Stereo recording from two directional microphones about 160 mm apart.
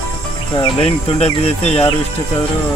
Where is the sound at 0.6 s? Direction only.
40° left (ahead or behind).